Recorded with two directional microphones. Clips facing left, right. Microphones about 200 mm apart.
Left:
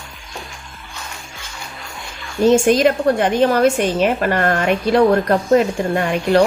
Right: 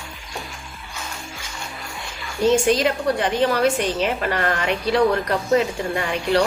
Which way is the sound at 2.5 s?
50° left (ahead or behind).